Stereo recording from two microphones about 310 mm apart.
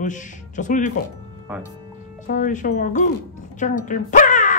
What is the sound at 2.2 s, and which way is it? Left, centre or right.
Speech, left.